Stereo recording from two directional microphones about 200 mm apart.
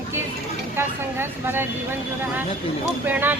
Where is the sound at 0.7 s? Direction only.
10° right (ahead or behind).